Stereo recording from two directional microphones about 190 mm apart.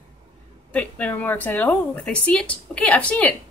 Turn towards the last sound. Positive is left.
turn(degrees=5)  # may be behind; listen again after turning